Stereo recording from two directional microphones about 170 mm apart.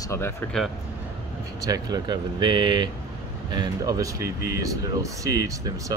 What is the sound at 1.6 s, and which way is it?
Speech, 20° right (ahead or behind).